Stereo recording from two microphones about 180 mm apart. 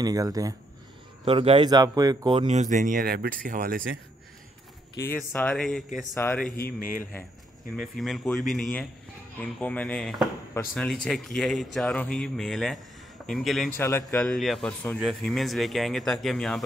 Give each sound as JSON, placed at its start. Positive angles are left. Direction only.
{"t": 0.0, "sound": "a man's voice", "side_deg": -20}
{"t": 1.2, "sound": "a man's voice", "side_deg": -30}
{"t": 2.4, "sound": "speech", "side_deg": -40}
{"t": 5.0, "sound": "speech", "side_deg": 10}
{"t": 6.1, "sound": "speech", "side_deg": 15}
{"t": 6.5, "sound": "a sound", "side_deg": 55}
{"t": 7.7, "sound": "speech", "side_deg": 0}
{"t": 13.7, "sound": "speech", "side_deg": 15}
{"t": 14.1, "sound": "speech", "side_deg": 0}